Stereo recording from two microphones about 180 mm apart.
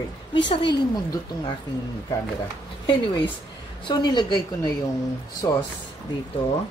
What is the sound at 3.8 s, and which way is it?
Speech, 25° left (ahead or behind).